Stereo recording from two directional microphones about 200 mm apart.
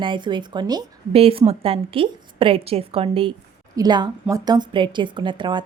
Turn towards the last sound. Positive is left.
turn(degrees=-25)  # may be behind; listen again after turning